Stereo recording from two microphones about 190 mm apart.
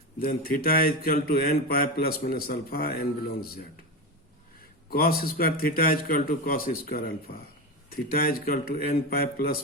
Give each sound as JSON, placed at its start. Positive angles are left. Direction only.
{"t": 0.2, "sound": "speech", "side_deg": 50}
{"t": 4.9, "sound": "speech", "side_deg": 50}